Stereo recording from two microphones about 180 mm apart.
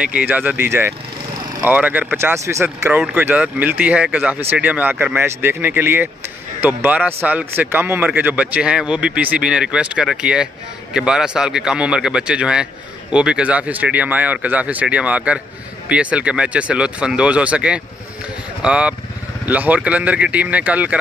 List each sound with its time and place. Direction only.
0.0 s a man's voice: 10° right (ahead or behind)